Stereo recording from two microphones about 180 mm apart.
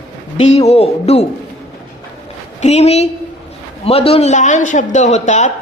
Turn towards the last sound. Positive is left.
turn(degrees=40)  # may be behind; listen again after turning